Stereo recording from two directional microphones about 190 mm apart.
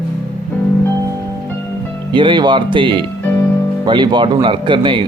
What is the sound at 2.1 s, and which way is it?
Speech, 25° right (ahead or behind).